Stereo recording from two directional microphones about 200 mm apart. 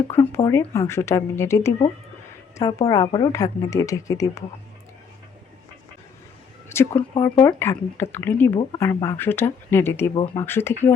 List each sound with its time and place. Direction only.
0.1 s speech: 15° left (ahead or behind)
6.9 s speech: 25° left (ahead or behind)
7.4 s speech: 10° left (ahead or behind)
8.5 s speech: 20° left (ahead or behind)